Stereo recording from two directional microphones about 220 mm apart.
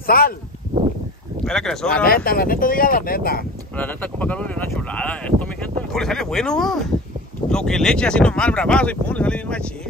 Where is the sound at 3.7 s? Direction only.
5° left (ahead or behind).